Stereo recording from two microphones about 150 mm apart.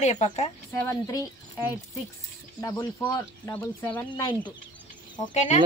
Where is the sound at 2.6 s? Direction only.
20° left (ahead or behind).